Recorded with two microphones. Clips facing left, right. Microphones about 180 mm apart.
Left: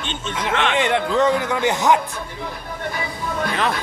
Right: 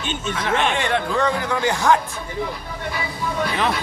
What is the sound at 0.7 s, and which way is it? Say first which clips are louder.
Speech: left 3 dB; 20° left (ahead or behind).